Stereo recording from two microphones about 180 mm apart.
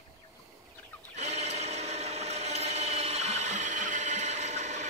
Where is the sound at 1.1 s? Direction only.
35° right (ahead or behind).